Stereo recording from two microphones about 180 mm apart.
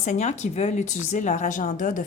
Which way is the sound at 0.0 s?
40° left (ahead or behind).